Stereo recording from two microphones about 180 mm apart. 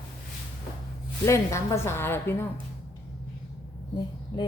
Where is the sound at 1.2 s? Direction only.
15° left (ahead or behind).